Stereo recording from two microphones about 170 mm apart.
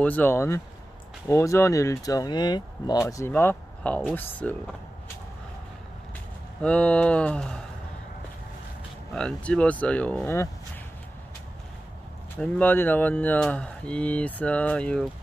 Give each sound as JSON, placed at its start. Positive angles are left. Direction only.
{"t": 0.0, "sound": "speech", "side_deg": 10}
{"t": 6.6, "sound": "speech", "side_deg": 5}
{"t": 9.1, "sound": "speech", "side_deg": 5}
{"t": 12.4, "sound": "speech", "side_deg": 10}